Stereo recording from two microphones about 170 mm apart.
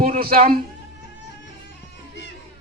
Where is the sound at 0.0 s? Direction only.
60° right (ahead or behind).